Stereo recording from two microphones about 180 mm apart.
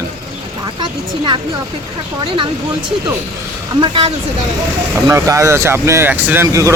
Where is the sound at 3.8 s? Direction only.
25° right (ahead or behind).